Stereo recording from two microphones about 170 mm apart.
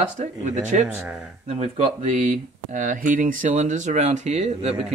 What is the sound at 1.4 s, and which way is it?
Speech, 40° right (ahead or behind).